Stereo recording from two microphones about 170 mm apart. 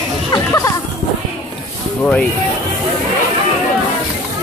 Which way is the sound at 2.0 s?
5° left (ahead or behind).